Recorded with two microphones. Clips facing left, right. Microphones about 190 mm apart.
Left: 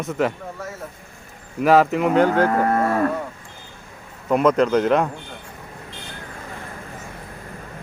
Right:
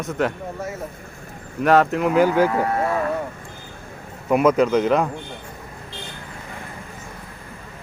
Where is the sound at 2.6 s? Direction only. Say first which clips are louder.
Left 2 dB; 50° left (ahead or behind).